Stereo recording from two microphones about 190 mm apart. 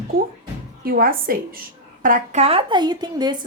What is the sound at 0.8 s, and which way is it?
A woman's voice, 50° right (ahead or behind).